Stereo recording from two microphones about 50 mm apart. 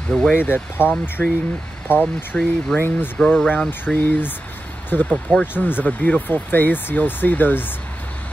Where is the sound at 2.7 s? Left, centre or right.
Centre.